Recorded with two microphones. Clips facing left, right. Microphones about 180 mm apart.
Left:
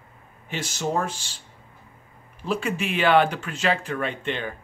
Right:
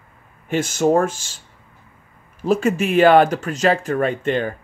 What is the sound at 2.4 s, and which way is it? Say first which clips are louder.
Speech: right 8 dB; 45° right (ahead or behind).